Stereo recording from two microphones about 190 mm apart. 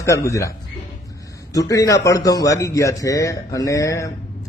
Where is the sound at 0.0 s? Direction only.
15° left (ahead or behind).